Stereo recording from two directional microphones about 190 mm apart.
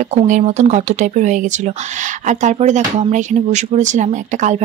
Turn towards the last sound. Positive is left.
turn(degrees=-40)  # may be behind; listen again after turning